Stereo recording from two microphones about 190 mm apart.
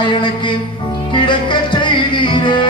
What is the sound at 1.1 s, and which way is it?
Music, 25° left (ahead or behind).